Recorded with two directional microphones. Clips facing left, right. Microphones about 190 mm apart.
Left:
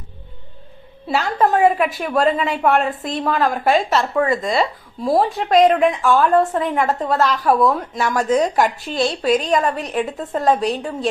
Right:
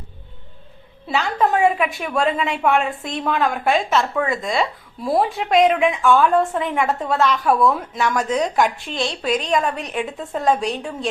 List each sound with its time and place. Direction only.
1.0 s a woman's voice: centre (ahead or behind)
9.2 s a woman's voice: 45° left (ahead or behind)
9.5 s a woman's voice: centre (ahead or behind)